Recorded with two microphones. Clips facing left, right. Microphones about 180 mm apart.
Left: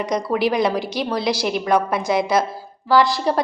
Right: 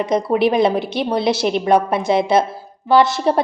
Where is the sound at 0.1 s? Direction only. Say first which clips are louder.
Right 4 dB; 25° right (ahead or behind).